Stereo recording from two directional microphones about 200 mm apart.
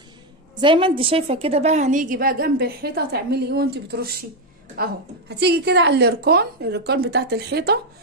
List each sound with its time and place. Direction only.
0.6 s a woman's voice: 25° right (ahead or behind); by 7.8 s 55° right (ahead or behind)